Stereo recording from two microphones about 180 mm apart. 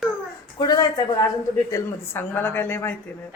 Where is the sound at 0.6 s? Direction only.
20° left (ahead or behind).